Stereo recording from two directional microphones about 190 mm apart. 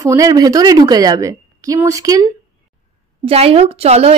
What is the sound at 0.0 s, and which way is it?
A woman's voice, 15° right (ahead or behind).